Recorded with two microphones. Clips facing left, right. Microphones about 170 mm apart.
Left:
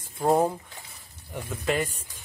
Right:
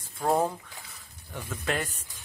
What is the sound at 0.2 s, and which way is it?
Speech, 15° left (ahead or behind).